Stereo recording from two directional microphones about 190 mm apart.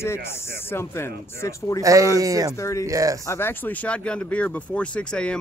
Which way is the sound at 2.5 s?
15° left (ahead or behind).